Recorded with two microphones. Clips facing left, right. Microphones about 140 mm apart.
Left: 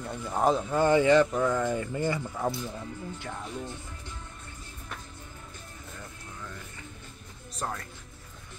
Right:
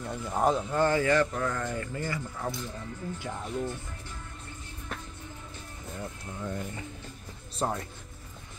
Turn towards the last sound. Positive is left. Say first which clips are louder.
# right 4 dB
turn(degrees=-25)  # may be behind; listen again after turning